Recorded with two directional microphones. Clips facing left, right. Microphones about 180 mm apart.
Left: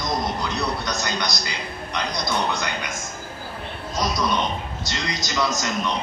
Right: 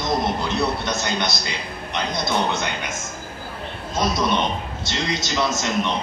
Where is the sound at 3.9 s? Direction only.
25° right (ahead or behind).